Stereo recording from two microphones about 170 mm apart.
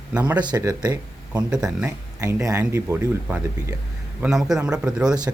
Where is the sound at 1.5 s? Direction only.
5° right (ahead or behind).